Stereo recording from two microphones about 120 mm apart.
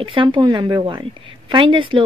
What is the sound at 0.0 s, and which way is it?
A woman's voice, 45° right (ahead or behind).